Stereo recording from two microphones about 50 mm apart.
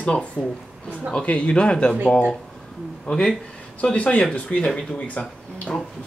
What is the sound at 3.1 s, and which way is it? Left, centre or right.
A man's voice, centre.